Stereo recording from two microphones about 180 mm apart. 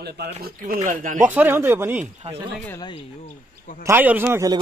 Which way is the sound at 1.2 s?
10° right (ahead or behind).